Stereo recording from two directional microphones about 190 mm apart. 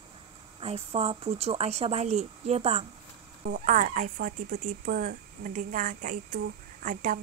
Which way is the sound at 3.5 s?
45° right (ahead or behind).